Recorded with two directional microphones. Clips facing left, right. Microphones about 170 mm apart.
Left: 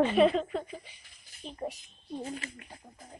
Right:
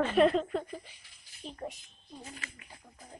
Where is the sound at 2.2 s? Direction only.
30° left (ahead or behind).